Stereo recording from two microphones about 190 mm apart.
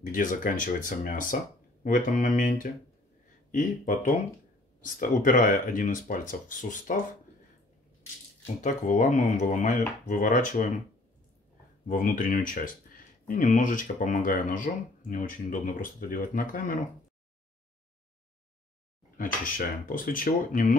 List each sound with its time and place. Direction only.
0.0 s speech: 45° left (ahead or behind)
8.5 s speech: 40° left (ahead or behind)
11.9 s speech: 45° left (ahead or behind)
19.1 s speech: 45° left (ahead or behind)